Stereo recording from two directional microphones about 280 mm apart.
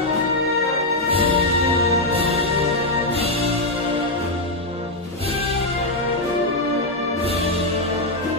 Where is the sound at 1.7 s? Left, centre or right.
Right.